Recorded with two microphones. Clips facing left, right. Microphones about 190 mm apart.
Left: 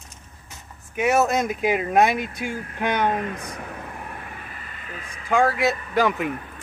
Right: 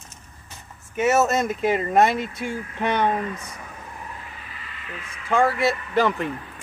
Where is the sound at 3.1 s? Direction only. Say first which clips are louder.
Left 1 dB; 55° left (ahead or behind); by 5.2 s 35° left (ahead or behind).